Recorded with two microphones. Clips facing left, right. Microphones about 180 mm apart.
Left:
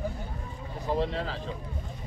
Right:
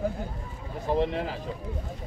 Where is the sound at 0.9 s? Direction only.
20° right (ahead or behind).